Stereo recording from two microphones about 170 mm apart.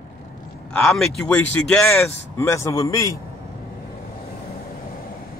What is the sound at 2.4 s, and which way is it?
Speech, 15° left (ahead or behind).